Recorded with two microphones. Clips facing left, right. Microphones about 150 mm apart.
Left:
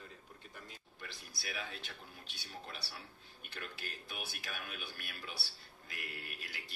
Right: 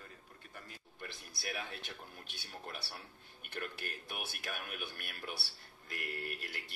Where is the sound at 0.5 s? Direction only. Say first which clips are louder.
Right 4 dB; 50° right (ahead or behind).